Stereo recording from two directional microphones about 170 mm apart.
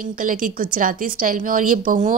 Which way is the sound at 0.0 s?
50° right (ahead or behind).